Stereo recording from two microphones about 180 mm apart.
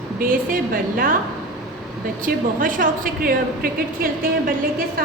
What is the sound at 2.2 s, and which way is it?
A woman's voice, 50° right (ahead or behind).